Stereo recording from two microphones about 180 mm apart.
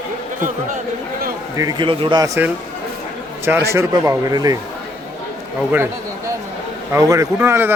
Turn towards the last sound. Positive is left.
turn(degrees=-10)  # may be behind; listen again after turning